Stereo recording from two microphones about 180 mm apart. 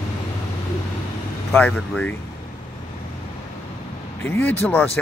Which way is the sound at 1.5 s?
5° left (ahead or behind).